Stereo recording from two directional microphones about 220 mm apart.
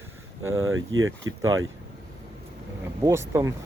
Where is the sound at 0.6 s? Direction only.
65° right (ahead or behind).